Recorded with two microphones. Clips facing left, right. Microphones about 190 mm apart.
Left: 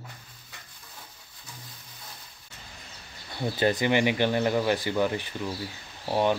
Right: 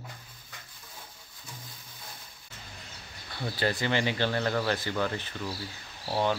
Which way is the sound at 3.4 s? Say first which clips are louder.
Left 5 dB; 20° left (ahead or behind).